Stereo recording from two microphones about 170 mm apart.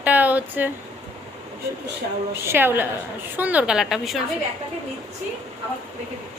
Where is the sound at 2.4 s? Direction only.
10° right (ahead or behind).